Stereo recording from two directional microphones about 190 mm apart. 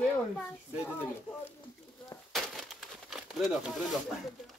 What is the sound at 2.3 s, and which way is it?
Crumpling, centre (ahead or behind).